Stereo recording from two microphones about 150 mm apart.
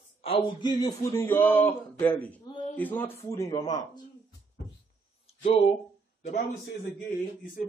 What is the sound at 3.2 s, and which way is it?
Speech, 25° left (ahead or behind).